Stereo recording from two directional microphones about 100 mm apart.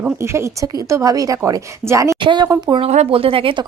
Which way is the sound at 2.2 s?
50° right (ahead or behind).